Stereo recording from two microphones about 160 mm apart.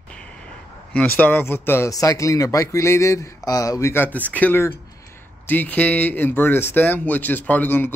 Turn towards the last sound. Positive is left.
turn(degrees=10)  # may be behind; listen again after turning